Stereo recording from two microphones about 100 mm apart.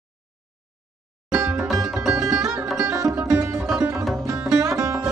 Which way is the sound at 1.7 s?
5° right (ahead or behind).